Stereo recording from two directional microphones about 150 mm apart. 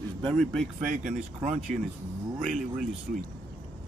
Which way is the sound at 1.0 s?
50° right (ahead or behind).